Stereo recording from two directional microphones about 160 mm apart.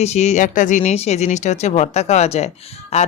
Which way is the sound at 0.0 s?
45° left (ahead or behind).